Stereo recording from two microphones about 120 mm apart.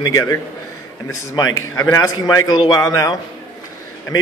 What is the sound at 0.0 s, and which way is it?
Speech, 30° left (ahead or behind).